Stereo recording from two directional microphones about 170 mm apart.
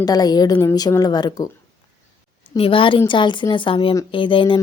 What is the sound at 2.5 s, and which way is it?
A woman's voice, 30° left (ahead or behind).